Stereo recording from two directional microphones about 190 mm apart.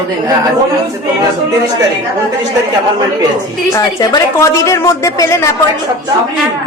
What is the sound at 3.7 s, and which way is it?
A woman's voice, 20° left (ahead or behind).